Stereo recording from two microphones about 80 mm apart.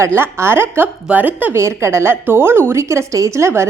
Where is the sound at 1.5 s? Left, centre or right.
Right.